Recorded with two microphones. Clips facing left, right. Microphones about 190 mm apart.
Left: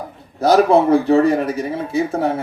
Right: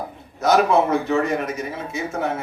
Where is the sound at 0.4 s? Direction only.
35° left (ahead or behind).